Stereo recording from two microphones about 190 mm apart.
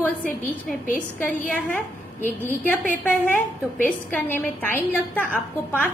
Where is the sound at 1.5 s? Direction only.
10° left (ahead or behind).